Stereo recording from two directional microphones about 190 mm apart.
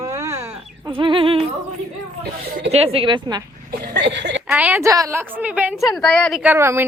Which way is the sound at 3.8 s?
60° right (ahead or behind).